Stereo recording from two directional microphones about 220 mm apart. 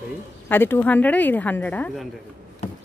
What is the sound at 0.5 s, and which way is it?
A woman's voice, 10° left (ahead or behind).